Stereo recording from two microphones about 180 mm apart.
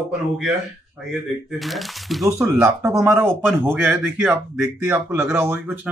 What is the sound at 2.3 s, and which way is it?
Speech, 15° right (ahead or behind).